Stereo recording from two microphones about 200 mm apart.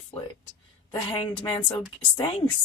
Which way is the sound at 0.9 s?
25° left (ahead or behind).